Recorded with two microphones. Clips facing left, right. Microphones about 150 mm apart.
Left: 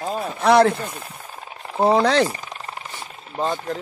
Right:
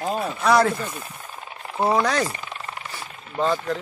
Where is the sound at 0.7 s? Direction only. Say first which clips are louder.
Left 1 dB; 30° left (ahead or behind).